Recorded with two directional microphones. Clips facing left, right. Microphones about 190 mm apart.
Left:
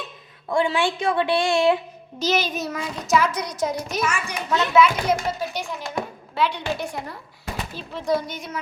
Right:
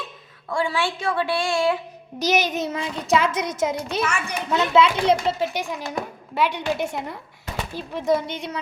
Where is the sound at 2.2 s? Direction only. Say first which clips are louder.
Right 2 dB; 15° right (ahead or behind).